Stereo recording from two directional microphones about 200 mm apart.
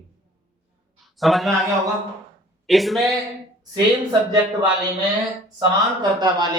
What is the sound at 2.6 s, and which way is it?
Speech, centre (ahead or behind).